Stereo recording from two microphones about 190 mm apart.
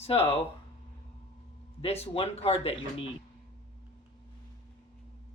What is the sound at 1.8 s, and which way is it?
Speech, 30° left (ahead or behind).